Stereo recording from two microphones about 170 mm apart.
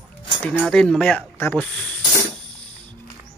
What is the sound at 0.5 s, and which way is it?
Speech, centre (ahead or behind).